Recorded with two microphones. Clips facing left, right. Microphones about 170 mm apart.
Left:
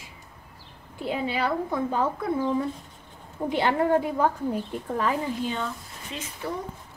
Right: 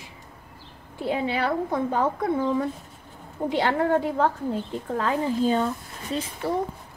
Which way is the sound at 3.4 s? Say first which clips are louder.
Right 1 dB; 15° right (ahead or behind).